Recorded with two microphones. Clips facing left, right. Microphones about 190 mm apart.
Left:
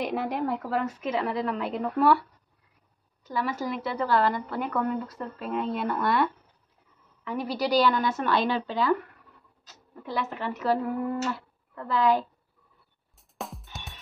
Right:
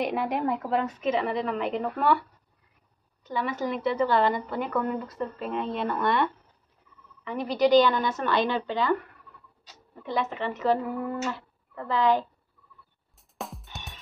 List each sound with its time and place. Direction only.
0.0 s speech: centre (ahead or behind)
3.3 s speech: 5° left (ahead or behind)
10.0 s speech: 5° left (ahead or behind)
13.4 s music: centre (ahead or behind)